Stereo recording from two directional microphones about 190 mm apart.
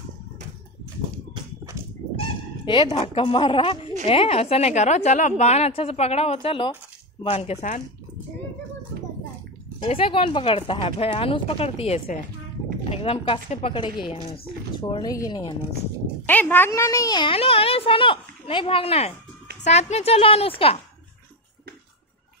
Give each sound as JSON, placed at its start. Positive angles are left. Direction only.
{"t": 2.1, "sound": "a woman's voice", "side_deg": 25}
{"t": 9.8, "sound": "a woman's voice", "side_deg": 30}
{"t": 16.3, "sound": "a woman's voice", "side_deg": 10}